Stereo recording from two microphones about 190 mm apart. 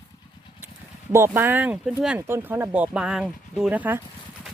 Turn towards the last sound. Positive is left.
turn(degrees=-10)  # may be behind; listen again after turning